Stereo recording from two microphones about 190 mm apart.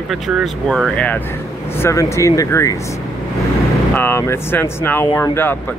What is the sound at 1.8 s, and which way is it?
Speech, 15° left (ahead or behind).